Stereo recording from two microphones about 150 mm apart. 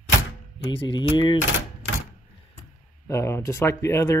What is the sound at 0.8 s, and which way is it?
Speech, 30° left (ahead or behind).